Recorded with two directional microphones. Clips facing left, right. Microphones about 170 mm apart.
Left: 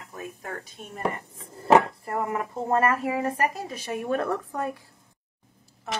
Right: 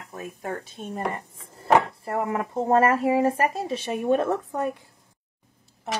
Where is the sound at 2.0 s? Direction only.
30° right (ahead or behind).